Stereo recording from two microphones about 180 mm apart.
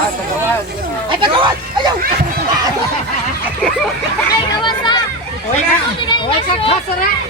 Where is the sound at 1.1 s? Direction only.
25° right (ahead or behind).